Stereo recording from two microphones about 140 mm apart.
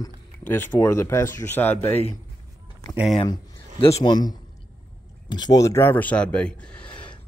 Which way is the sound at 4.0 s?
30° left (ahead or behind).